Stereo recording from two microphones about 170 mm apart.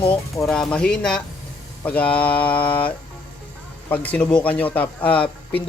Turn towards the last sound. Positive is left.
turn(degrees=10)  # may be behind; listen again after turning